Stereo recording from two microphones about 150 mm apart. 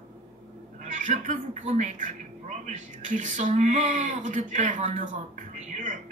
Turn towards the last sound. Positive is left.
turn(degrees=-60)  # may be behind; listen again after turning